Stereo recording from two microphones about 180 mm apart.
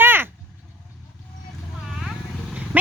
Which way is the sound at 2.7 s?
10° right (ahead or behind).